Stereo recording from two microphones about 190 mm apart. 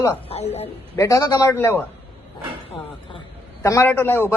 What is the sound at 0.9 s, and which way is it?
Speech, 20° left (ahead or behind).